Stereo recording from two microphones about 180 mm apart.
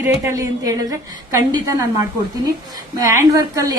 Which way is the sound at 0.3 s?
15° right (ahead or behind).